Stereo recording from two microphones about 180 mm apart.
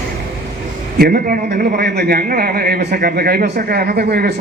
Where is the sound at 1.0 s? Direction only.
60° right (ahead or behind).